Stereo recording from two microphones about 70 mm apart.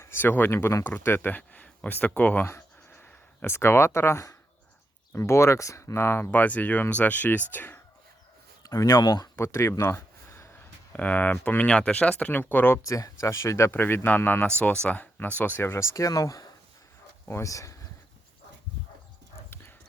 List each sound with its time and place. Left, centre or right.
0.0 s speech: left
0.9 s speech: left
2.5 s a sound: left
5.1 s speech: left
8.6 s speech: left
9.5 s a sound: left
10.9 s speech: left
12.3 s speech: left
12.8 s speech: left
14.6 s speech: centre; by 17.7 s left